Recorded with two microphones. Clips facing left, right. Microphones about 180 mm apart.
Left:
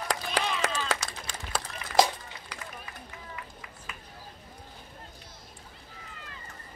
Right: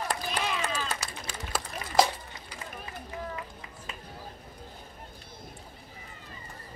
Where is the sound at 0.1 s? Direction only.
90° left.